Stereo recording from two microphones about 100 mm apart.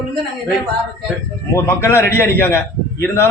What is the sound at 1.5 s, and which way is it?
A man's voice, 25° left (ahead or behind).